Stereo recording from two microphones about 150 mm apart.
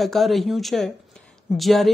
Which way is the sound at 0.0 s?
Centre (ahead or behind).